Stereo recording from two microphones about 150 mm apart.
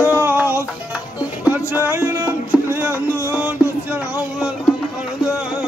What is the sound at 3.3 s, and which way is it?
Music, 10° right (ahead or behind).